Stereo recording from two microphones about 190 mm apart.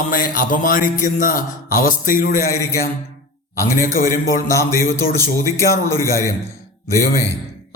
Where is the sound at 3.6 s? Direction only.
50° left (ahead or behind).